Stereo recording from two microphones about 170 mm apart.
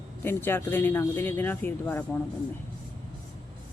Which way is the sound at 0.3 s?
10° left (ahead or behind).